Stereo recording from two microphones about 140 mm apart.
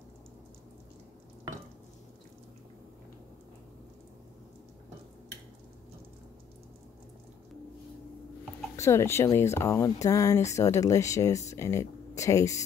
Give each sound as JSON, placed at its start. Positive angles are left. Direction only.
{"t": 8.7, "sound": "speech", "side_deg": 20}